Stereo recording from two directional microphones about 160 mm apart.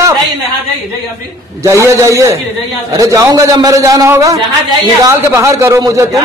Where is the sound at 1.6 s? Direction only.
20° right (ahead or behind).